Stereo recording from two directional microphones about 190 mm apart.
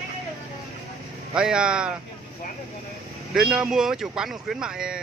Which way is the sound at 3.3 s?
5° right (ahead or behind).